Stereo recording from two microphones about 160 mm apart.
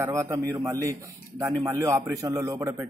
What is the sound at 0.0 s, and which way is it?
A man's voice, 20° right (ahead or behind).